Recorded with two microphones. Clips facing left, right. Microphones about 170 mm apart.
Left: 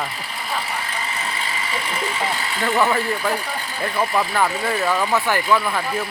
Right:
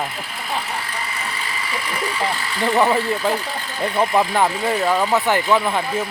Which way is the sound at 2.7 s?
15° right (ahead or behind).